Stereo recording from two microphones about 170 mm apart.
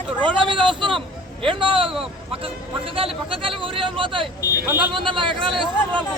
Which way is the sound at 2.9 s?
30° right (ahead or behind).